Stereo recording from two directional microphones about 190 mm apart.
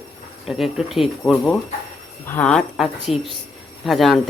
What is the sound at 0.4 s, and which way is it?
Speech, centre (ahead or behind).